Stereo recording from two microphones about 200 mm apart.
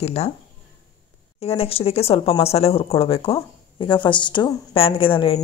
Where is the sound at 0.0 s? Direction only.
30° left (ahead or behind).